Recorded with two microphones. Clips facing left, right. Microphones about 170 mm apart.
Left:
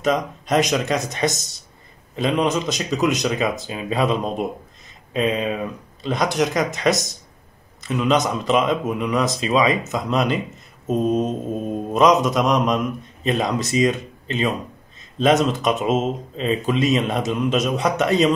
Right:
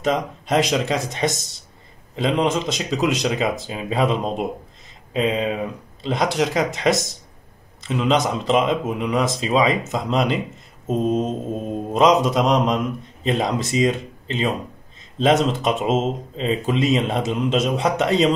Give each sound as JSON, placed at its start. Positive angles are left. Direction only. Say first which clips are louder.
{"t": 0.0, "sound": "mantra", "louder": "left 1 dB", "side_deg": -25}
{"t": 7.8, "sound": "a man's voice", "louder": "even", "side_deg": -25}
{"t": 8.5, "sound": "mantra", "louder": "right 1 dB", "side_deg": -25}